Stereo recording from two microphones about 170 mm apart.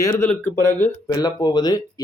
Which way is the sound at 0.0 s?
15° left (ahead or behind).